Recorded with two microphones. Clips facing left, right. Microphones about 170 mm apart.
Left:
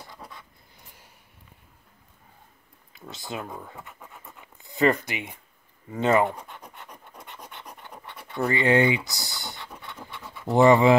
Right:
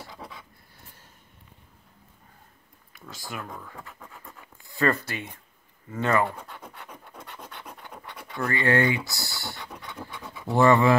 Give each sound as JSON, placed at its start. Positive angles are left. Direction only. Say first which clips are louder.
{"t": 0.0, "sound": "a sound", "louder": "right 2 dB", "side_deg": -5}
{"t": 3.1, "sound": "speech", "louder": "left 3 dB", "side_deg": 25}
{"t": 3.7, "sound": "scratch", "louder": "even", "side_deg": 5}
{"t": 4.6, "sound": "speech", "louder": "left 3 dB", "side_deg": 20}
{"t": 6.5, "sound": "scratch", "louder": "right 1 dB", "side_deg": 0}
{"t": 8.4, "sound": "speech", "louder": "left 3 dB", "side_deg": 20}